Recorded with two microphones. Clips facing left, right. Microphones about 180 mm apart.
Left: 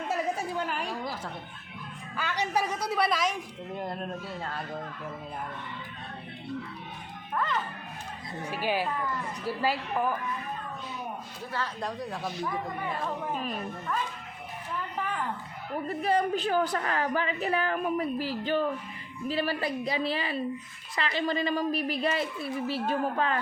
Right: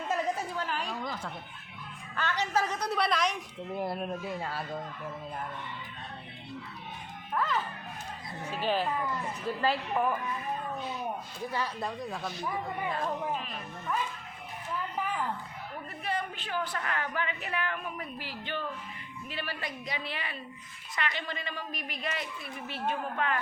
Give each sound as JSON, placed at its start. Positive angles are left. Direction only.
{"t": 0.1, "sound": "a sound", "side_deg": 10}
{"t": 2.1, "sound": "a woman's voice", "side_deg": 10}
{"t": 3.8, "sound": "speech", "side_deg": -5}
{"t": 7.3, "sound": "speech", "side_deg": 0}
{"t": 8.4, "sound": "a woman's voice", "side_deg": 10}
{"t": 11.5, "sound": "speech", "side_deg": -10}
{"t": 11.9, "sound": "speech", "side_deg": 0}
{"t": 15.9, "sound": "a woman's voice", "side_deg": 35}